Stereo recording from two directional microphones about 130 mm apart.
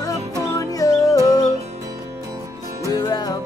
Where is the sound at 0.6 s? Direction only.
25° left (ahead or behind).